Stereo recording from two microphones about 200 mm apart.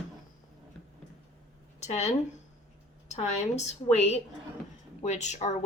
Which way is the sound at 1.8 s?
35° left (ahead or behind).